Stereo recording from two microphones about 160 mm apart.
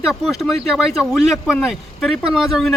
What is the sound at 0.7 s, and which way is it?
Speech, centre (ahead or behind).